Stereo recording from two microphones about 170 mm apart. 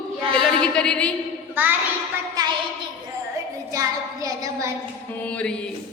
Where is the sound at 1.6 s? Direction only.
10° right (ahead or behind).